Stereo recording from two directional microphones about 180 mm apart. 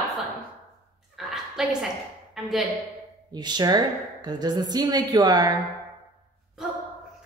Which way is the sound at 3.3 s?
25° right (ahead or behind).